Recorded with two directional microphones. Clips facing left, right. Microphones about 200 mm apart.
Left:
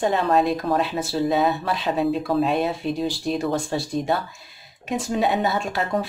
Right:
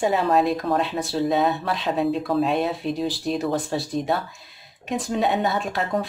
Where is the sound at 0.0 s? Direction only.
5° right (ahead or behind).